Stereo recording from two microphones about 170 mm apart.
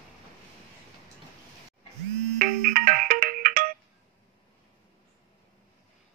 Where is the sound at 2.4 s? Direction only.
60° right (ahead or behind).